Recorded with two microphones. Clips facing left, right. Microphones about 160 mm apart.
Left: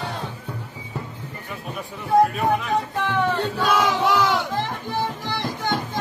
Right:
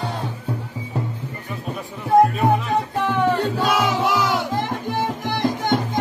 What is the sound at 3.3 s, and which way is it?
Crowd, 10° right (ahead or behind).